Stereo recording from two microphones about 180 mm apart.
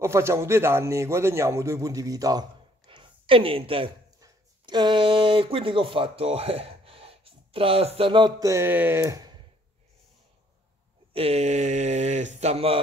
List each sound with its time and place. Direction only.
0.0 s a man's voice: 15° right (ahead or behind)
2.9 s a sound: 30° right (ahead or behind)
4.2 s speech: 25° right (ahead or behind)
11.1 s speech: 35° right (ahead or behind)